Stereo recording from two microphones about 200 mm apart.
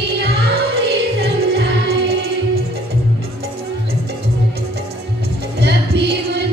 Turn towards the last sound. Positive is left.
turn(degrees=-60)  # may be behind; listen again after turning